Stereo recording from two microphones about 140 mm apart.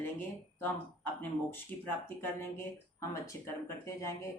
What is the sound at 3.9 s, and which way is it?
Speech, 20° left (ahead or behind).